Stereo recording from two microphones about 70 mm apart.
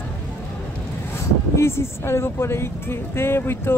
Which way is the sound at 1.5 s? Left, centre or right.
Left.